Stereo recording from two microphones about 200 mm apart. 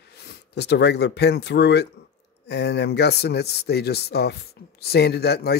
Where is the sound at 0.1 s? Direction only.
55° left (ahead or behind).